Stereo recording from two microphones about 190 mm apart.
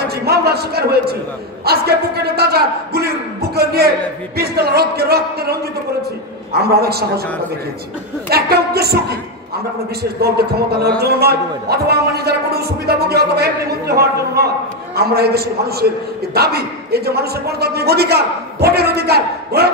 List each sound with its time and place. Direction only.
0.0 s a man's voice: 55° right (ahead or behind)
6.6 s a man's voice: 55° right (ahead or behind)
8.3 s a man's voice: 55° right (ahead or behind)